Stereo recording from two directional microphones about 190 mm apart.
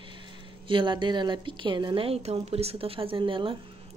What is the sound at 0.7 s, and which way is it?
A woman's voice, 25° right (ahead or behind).